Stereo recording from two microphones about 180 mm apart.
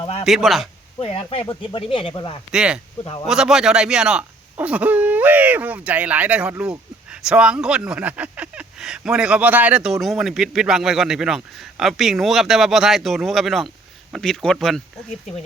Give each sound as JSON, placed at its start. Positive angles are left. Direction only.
{"t": 0.0, "sound": "speech", "side_deg": 35}
{"t": 0.3, "sound": "speech", "side_deg": 0}
{"t": 1.0, "sound": "speech", "side_deg": 30}
{"t": 2.5, "sound": "speech", "side_deg": -5}
{"t": 3.0, "sound": "speech", "side_deg": 25}
{"t": 3.2, "sound": "speech", "side_deg": -5}